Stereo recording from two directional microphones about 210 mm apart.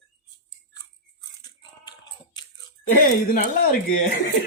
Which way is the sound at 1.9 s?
20° left (ahead or behind).